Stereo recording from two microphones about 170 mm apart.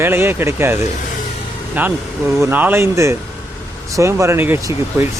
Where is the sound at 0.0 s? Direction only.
15° right (ahead or behind).